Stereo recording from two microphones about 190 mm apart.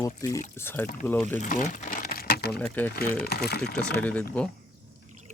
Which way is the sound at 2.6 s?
10° left (ahead or behind).